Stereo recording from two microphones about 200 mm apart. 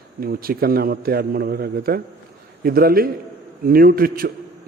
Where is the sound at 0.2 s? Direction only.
50° right (ahead or behind).